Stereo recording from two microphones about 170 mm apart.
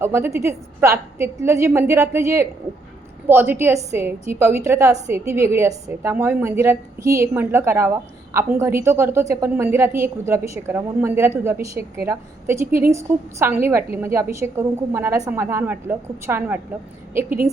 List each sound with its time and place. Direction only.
0.0 s a woman's voice: 15° right (ahead or behind)
17.2 s a woman's voice: 55° right (ahead or behind)